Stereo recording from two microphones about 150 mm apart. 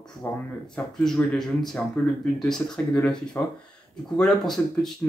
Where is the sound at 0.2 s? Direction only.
20° left (ahead or behind).